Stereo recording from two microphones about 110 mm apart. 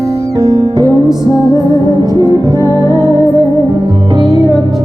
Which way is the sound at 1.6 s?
40° right (ahead or behind).